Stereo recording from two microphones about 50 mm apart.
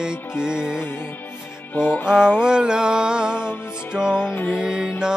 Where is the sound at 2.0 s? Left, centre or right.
Centre.